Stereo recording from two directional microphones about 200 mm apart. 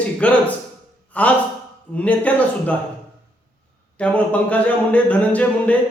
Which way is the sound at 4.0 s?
5° left (ahead or behind).